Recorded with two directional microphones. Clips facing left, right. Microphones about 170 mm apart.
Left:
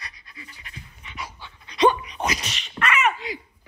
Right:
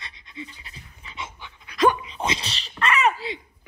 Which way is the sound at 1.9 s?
25° right (ahead or behind).